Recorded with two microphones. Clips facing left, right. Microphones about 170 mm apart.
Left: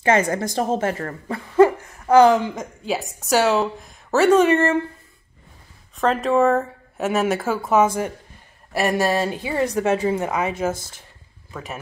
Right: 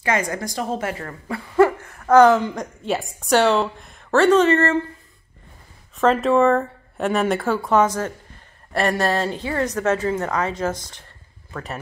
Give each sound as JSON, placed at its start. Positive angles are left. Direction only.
{"t": 0.0, "sound": "a woman's voice", "side_deg": 25}
{"t": 0.9, "sound": "speech", "side_deg": 40}
{"t": 1.6, "sound": "a sound", "side_deg": 10}
{"t": 2.5, "sound": "a woman's voice", "side_deg": 0}
{"t": 5.9, "sound": "a woman's voice", "side_deg": 0}